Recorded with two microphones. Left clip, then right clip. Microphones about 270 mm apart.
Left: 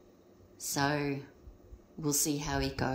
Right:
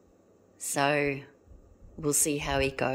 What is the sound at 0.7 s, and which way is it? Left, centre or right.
A woman's voice, centre.